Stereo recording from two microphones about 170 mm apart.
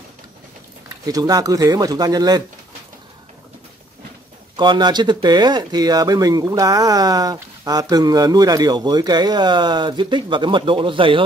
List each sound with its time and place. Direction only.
1.0 s speech: 20° right (ahead or behind)
4.6 s speech: 25° right (ahead or behind)